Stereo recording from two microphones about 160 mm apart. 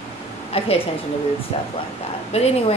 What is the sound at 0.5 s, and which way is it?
Speech, 35° left (ahead or behind).